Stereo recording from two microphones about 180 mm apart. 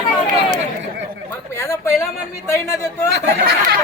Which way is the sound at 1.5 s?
15° left (ahead or behind).